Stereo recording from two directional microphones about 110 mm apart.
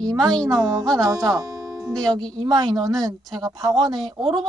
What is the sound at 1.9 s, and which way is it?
A woman's voice, 35° right (ahead or behind).